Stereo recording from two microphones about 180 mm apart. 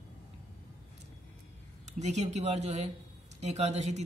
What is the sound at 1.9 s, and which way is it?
Speech, 40° right (ahead or behind).